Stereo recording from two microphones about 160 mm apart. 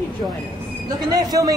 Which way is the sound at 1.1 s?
25° right (ahead or behind).